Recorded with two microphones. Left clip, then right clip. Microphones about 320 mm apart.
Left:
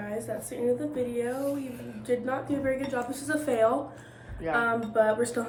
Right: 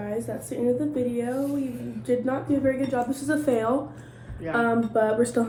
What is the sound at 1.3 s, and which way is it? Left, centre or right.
Speech, centre.